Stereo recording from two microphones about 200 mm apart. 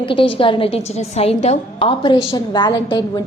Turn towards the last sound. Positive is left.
turn(degrees=20)  # may be behind; listen again after turning